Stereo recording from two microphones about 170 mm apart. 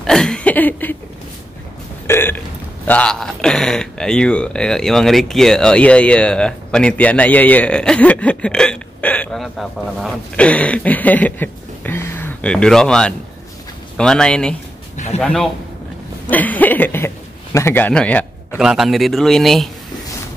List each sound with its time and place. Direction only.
0.0 s a sound: 5° left (ahead or behind)
2.0 s burping: 15° left (ahead or behind)
2.9 s a man's voice: 5° left (ahead or behind)